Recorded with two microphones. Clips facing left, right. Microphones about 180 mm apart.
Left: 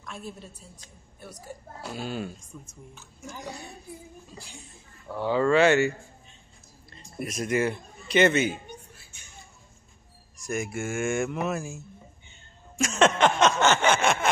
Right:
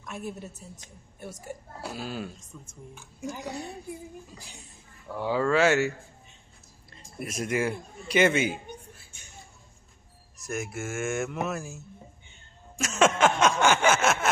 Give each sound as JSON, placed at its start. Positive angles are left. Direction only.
{"t": 0.0, "sound": "a woman's voice", "side_deg": -15}
{"t": 1.8, "sound": "speech", "side_deg": 0}
{"t": 2.3, "sound": "a woman's voice", "side_deg": -25}
{"t": 2.9, "sound": "a man's voice", "side_deg": -10}
{"t": 7.2, "sound": "a man's voice", "side_deg": -5}
{"t": 10.3, "sound": "speech", "side_deg": -5}
{"t": 12.7, "sound": "a sound", "side_deg": -5}